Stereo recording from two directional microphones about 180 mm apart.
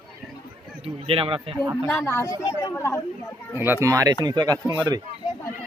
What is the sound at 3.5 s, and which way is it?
Speech, 10° right (ahead or behind).